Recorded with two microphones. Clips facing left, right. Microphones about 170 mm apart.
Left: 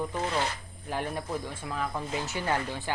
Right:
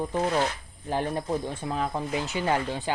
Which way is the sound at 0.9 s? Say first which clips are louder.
Right 5 dB; 30° right (ahead or behind).